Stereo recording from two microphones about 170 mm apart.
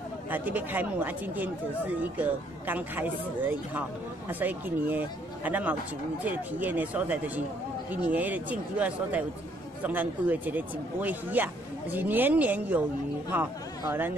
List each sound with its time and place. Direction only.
0.3 s speech: 10° right (ahead or behind)